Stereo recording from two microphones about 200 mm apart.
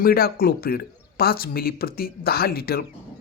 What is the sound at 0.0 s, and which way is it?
Speech, 50° left (ahead or behind).